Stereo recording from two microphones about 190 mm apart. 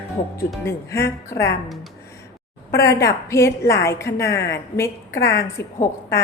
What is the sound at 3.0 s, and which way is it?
A woman's voice, 15° left (ahead or behind).